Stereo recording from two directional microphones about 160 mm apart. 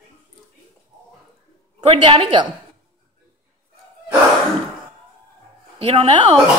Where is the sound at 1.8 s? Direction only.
35° right (ahead or behind).